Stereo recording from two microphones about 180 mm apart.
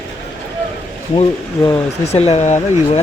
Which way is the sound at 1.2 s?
35° left (ahead or behind).